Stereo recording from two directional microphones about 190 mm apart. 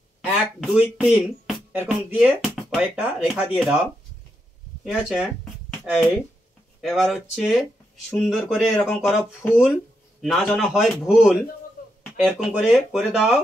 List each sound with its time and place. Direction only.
0.2 s speech: 5° right (ahead or behind)
4.8 s speech: 5° right (ahead or behind)
9.5 s speech: 5° right (ahead or behind)
11.8 s a sound: 50° left (ahead or behind)
12.2 s speech: 5° right (ahead or behind)